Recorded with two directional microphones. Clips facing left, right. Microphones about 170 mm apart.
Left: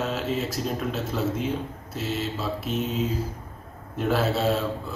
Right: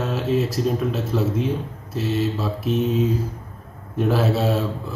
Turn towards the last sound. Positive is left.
turn(degrees=0)  # may be behind; listen again after turning